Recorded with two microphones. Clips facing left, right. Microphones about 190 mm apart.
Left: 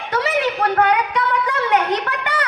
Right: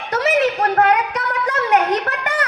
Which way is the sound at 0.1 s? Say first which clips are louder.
Right 3 dB; 40° right (ahead or behind).